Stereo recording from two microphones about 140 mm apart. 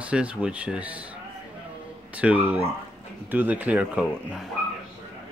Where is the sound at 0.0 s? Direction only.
10° right (ahead or behind).